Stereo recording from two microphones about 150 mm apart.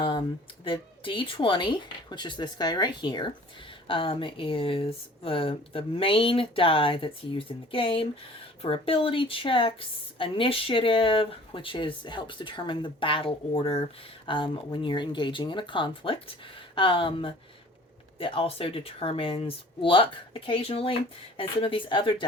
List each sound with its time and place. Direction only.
0.0 s speech: 30° left (ahead or behind)